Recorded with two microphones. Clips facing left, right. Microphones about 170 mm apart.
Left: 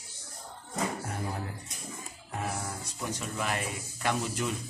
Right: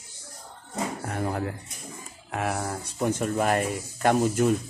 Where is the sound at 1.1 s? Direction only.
70° right (ahead or behind).